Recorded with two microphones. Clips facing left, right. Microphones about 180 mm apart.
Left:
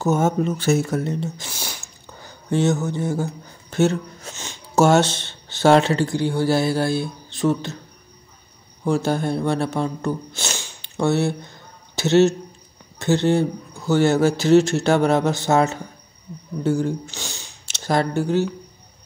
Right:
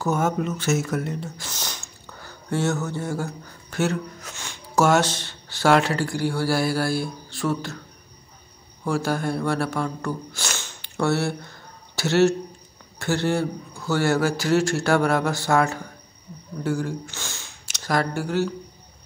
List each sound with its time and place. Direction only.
0.0 s speech: 25° left (ahead or behind)
1.5 s a sound: 10° left (ahead or behind)
3.7 s speech: 25° left (ahead or behind)
8.8 s speech: 20° left (ahead or behind)